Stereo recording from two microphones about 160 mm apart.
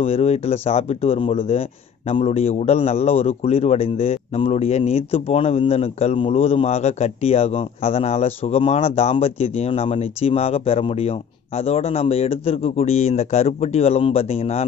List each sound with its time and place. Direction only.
0.0 s speech: 40° left (ahead or behind)